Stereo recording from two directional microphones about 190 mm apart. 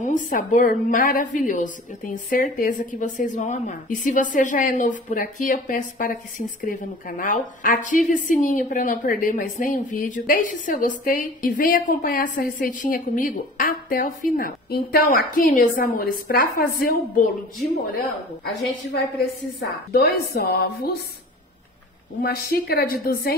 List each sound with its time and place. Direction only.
0.0 s a woman's voice: 45° left (ahead or behind)
19.9 s a woman's voice: 55° left (ahead or behind)
22.2 s a woman's voice: 55° left (ahead or behind)